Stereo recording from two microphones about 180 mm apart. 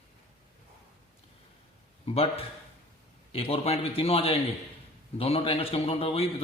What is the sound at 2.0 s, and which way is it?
A man's voice, 35° left (ahead or behind).